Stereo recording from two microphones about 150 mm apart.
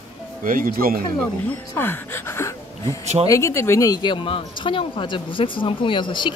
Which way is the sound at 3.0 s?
45° right (ahead or behind).